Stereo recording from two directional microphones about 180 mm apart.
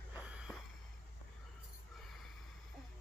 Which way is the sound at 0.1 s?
5° right (ahead or behind).